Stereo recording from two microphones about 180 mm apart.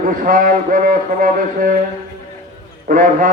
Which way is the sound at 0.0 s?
50° right (ahead or behind).